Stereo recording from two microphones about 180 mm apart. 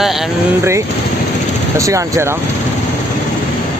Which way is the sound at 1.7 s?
15° right (ahead or behind).